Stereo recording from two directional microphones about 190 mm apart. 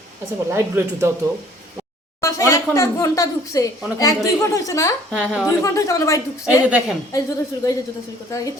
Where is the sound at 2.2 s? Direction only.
15° left (ahead or behind).